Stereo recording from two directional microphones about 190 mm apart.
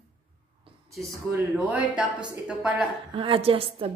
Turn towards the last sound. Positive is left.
turn(degrees=-30)  # may be behind; listen again after turning